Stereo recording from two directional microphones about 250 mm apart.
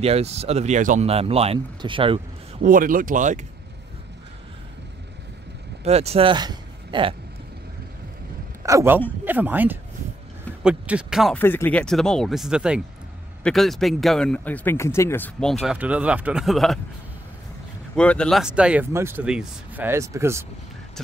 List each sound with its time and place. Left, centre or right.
0.0 s speech: right
2.6 s speech: right
5.9 s speech: right
8.6 s speech: centre
15.6 s speech: centre
17.9 s speech: centre